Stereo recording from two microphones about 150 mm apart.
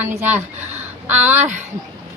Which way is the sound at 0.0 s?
15° right (ahead or behind).